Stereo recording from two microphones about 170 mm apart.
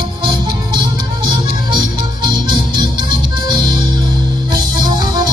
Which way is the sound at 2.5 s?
25° right (ahead or behind).